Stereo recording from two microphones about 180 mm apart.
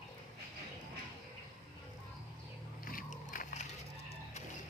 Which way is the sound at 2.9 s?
45° left (ahead or behind).